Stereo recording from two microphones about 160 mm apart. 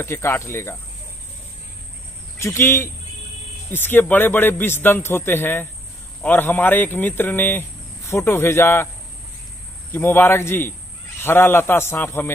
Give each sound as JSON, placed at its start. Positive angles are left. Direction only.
{"t": 0.0, "sound": "a man's voice", "side_deg": 15}
{"t": 2.4, "sound": "a man's voice", "side_deg": 15}
{"t": 9.9, "sound": "a man's voice", "side_deg": 15}